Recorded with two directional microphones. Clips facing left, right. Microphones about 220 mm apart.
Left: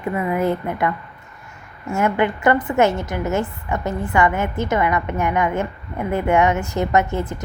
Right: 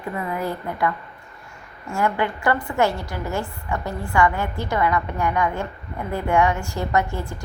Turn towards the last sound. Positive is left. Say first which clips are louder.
# left 4 dB
turn(degrees=20)  # may be behind; listen again after turning